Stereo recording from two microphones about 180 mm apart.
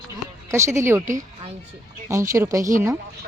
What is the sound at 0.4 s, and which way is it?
Speech, 15° right (ahead or behind).